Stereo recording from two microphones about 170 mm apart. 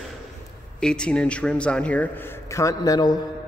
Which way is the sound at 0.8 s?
5° left (ahead or behind).